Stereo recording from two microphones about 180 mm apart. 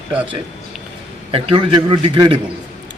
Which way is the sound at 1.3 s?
25° right (ahead or behind).